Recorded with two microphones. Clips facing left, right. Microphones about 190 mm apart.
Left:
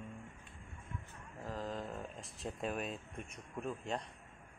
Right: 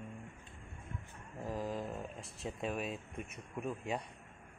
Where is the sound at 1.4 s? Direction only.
10° right (ahead or behind).